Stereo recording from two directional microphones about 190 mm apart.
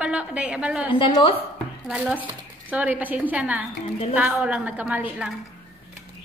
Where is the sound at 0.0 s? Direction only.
5° right (ahead or behind).